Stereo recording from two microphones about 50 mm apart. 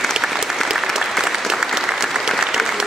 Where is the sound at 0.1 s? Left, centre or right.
Centre.